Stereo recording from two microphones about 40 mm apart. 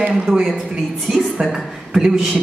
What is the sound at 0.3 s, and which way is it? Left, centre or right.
A woman's voice, centre.